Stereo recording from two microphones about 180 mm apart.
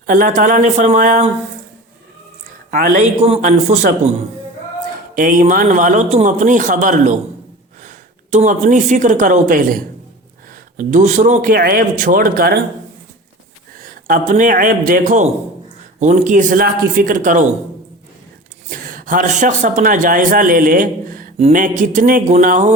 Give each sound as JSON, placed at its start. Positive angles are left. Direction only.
{"t": 0.1, "sound": "speech", "side_deg": -45}
{"t": 2.6, "sound": "a man's voice", "side_deg": -50}
{"t": 5.1, "sound": "a woman's voice", "side_deg": -50}
{"t": 10.8, "sound": "speech", "side_deg": -45}
{"t": 13.7, "sound": "a man's voice", "side_deg": -50}
{"t": 18.9, "sound": "speech", "side_deg": -50}